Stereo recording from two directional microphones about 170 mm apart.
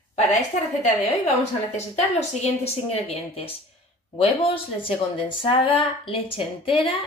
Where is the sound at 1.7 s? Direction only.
40° left (ahead or behind).